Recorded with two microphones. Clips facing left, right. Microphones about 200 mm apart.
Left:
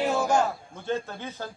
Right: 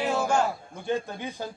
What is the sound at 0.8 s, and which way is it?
Speech, 15° right (ahead or behind).